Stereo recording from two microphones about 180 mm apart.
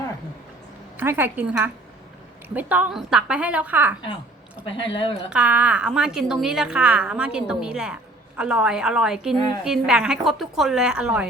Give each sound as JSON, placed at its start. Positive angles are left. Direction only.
{"t": 0.9, "sound": "a woman's voice", "side_deg": -10}
{"t": 4.6, "sound": "speech", "side_deg": 30}
{"t": 5.3, "sound": "a woman's voice", "side_deg": -10}